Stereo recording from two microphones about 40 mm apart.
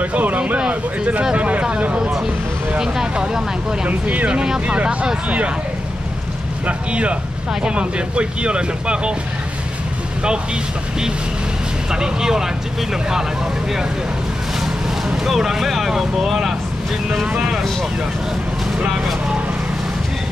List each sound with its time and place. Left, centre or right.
0.0 s speech: right
2.0 s speech: centre
3.8 s speech: right
6.9 s speech: right
11.9 s speech: centre
15.2 s speech: centre